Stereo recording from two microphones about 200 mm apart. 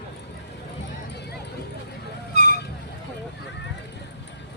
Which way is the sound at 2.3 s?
50° left (ahead or behind).